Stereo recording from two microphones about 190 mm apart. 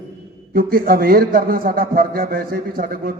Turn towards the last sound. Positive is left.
turn(degrees=-50)  # may be behind; listen again after turning